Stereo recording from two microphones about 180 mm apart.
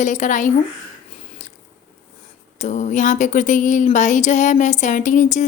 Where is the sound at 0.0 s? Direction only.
45° left (ahead or behind).